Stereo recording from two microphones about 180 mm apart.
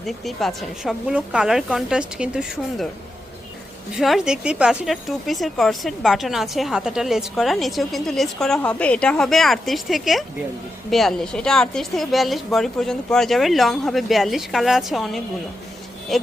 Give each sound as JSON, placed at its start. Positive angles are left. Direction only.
{"t": 0.0, "sound": "speech", "side_deg": 0}
{"t": 3.9, "sound": "speech", "side_deg": 0}